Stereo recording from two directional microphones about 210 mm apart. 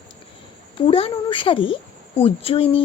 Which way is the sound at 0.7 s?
25° left (ahead or behind).